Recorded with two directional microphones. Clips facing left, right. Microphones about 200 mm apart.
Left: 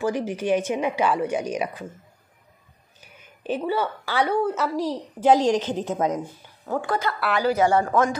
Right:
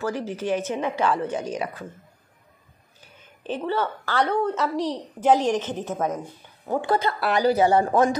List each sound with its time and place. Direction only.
0.0 s a woman's voice: 15° left (ahead or behind)
3.4 s a woman's voice: 10° left (ahead or behind)
6.7 s speech: 20° right (ahead or behind); by 7.7 s 35° right (ahead or behind)